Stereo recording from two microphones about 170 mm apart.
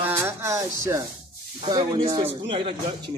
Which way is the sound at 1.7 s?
30° right (ahead or behind).